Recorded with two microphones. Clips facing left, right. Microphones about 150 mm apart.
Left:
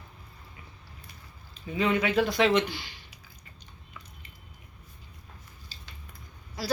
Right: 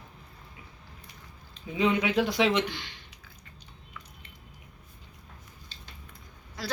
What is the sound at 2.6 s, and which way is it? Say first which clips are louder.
Speech: even; 10° left (ahead or behind).